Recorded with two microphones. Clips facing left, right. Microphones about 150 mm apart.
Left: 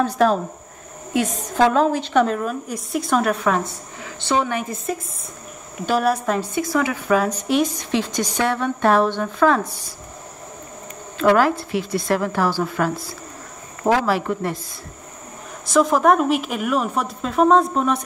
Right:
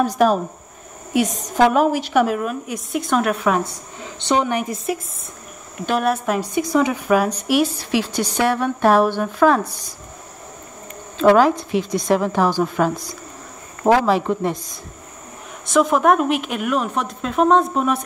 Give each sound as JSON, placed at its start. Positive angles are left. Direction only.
{"t": 0.0, "sound": "a woman's voice", "side_deg": -15}
{"t": 5.8, "sound": "a woman's voice", "side_deg": 0}
{"t": 11.1, "sound": "a woman's voice", "side_deg": -20}
{"t": 15.7, "sound": "a woman's voice", "side_deg": 0}